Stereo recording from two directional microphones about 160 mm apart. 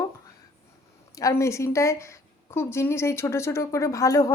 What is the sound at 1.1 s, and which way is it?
Speech, 20° left (ahead or behind).